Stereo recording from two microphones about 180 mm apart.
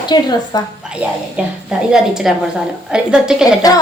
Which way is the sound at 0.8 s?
5° right (ahead or behind).